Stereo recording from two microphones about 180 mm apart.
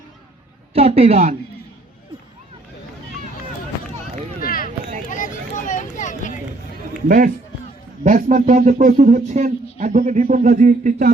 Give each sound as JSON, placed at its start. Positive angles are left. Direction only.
{"t": 0.7, "sound": "speech", "side_deg": -35}
{"t": 4.4, "sound": "a sound", "side_deg": 55}
{"t": 7.1, "sound": "a man's voice", "side_deg": -50}